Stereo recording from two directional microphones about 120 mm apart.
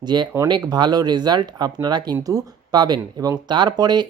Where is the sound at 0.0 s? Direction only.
40° right (ahead or behind).